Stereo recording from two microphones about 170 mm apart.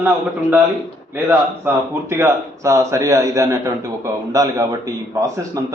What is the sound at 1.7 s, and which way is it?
A man's voice, 15° right (ahead or behind).